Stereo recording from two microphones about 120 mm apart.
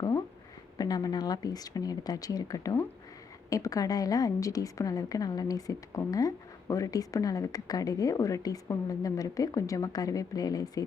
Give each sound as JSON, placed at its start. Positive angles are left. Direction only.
{"t": 0.8, "sound": "a woman's voice", "side_deg": 35}